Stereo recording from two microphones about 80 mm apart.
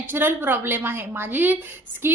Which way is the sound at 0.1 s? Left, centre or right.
Right.